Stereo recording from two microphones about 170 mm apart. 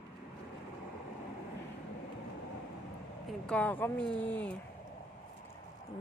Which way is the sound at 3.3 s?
5° left (ahead or behind).